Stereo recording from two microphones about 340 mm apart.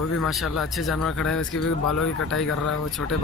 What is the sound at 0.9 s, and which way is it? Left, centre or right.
Speech, centre.